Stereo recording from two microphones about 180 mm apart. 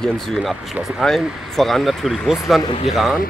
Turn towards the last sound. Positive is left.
turn(degrees=0)  # may be behind; listen again after turning